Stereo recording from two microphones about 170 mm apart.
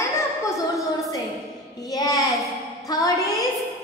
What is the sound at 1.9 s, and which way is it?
A woman's voice, 20° left (ahead or behind).